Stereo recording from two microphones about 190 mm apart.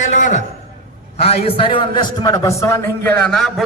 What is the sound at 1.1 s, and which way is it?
A man's voice, 35° left (ahead or behind).